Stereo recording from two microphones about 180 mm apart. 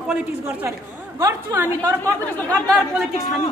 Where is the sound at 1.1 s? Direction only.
15° right (ahead or behind).